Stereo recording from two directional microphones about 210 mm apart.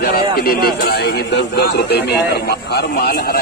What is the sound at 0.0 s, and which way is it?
A man's voice, 45° left (ahead or behind).